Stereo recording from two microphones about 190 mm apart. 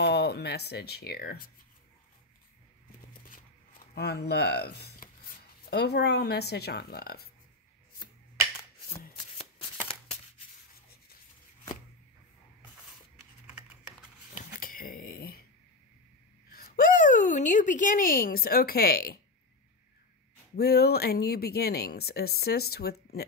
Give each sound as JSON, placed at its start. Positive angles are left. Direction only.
{"t": 0.0, "sound": "speech", "side_deg": 60}
{"t": 3.9, "sound": "a woman's voice", "side_deg": 60}
{"t": 14.6, "sound": "a sound", "side_deg": 50}
{"t": 16.5, "sound": "a woman's voice", "side_deg": 50}
{"t": 20.5, "sound": "a woman's voice", "side_deg": 55}